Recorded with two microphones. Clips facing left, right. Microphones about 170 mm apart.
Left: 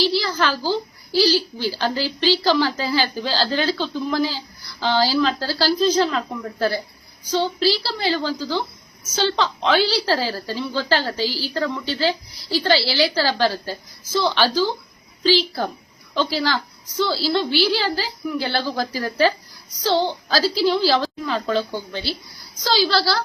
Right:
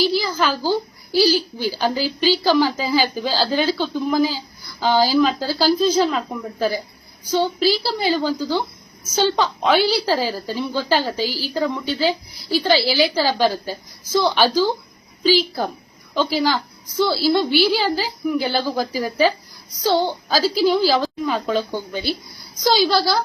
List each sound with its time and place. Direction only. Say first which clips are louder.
0.2 s a woman's voice: right 1 dB; 10° right (ahead or behind)